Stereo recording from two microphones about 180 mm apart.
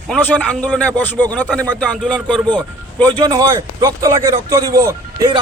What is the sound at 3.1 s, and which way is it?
A man's voice, 25° right (ahead or behind).